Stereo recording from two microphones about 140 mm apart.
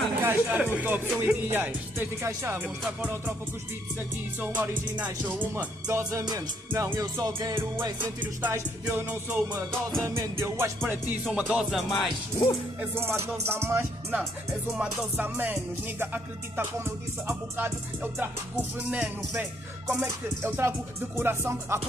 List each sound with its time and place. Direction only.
0.2 s speech: 15° right (ahead or behind)
0.7 s music: 10° right (ahead or behind)
4.4 s music: 10° right (ahead or behind)
11.2 s music: 5° right (ahead or behind)
12.8 s music: 15° right (ahead or behind)